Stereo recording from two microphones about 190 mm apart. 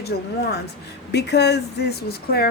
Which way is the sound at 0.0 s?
55° left (ahead or behind).